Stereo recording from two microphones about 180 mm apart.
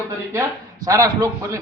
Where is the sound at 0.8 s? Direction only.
20° right (ahead or behind).